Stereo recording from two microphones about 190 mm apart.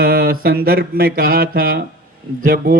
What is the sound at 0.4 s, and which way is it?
A man's voice, 50° right (ahead or behind).